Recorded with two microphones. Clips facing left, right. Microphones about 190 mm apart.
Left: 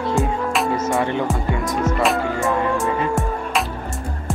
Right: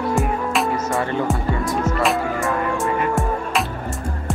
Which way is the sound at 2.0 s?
Centre (ahead or behind).